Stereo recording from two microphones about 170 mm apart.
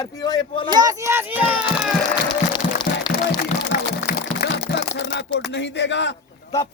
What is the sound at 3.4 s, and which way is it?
Music, 60° left (ahead or behind).